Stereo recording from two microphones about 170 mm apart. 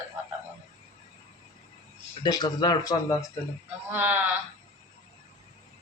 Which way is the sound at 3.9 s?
10° right (ahead or behind).